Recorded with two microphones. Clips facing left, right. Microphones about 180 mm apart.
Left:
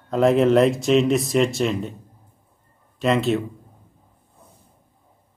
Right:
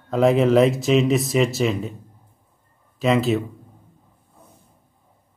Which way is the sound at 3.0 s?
Centre (ahead or behind).